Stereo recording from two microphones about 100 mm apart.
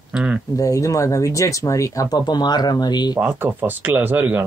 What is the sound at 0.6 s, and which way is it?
Speech, 35° left (ahead or behind).